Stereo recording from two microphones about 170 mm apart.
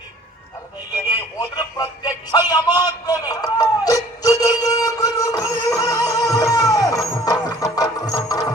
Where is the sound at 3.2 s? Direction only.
20° left (ahead or behind).